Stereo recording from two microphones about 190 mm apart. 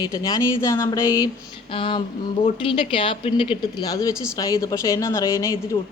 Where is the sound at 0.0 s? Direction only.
20° left (ahead or behind).